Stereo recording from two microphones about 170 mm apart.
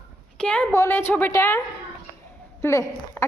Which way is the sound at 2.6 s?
15° left (ahead or behind).